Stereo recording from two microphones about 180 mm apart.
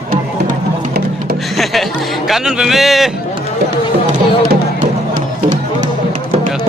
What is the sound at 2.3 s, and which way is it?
Speech, centre (ahead or behind).